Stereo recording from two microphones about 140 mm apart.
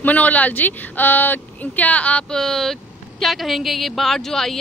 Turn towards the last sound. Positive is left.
turn(degrees=5)  # may be behind; listen again after turning